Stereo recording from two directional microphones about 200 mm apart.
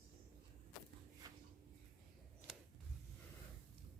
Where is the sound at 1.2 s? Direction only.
15° right (ahead or behind).